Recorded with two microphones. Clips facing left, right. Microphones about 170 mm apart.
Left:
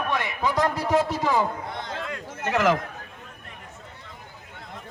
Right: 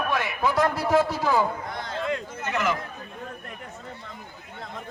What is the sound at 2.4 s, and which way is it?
Speech, 90° left.